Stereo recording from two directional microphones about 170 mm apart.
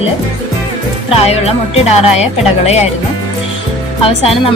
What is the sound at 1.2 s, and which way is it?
Speech, 40° left (ahead or behind).